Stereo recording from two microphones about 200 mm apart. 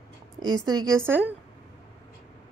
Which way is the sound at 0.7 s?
15° right (ahead or behind).